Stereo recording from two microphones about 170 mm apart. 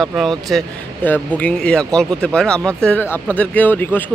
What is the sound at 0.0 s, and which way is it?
Speech, centre (ahead or behind).